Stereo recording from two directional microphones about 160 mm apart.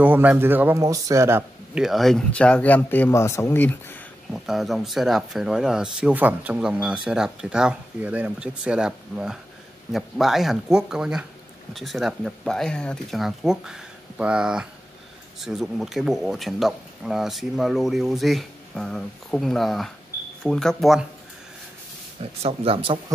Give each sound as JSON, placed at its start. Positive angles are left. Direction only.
{"t": 0.0, "sound": "speech", "side_deg": -10}
{"t": 1.8, "sound": "speech", "side_deg": 0}
{"t": 4.3, "sound": "speech", "side_deg": 0}
{"t": 22.2, "sound": "speech", "side_deg": -40}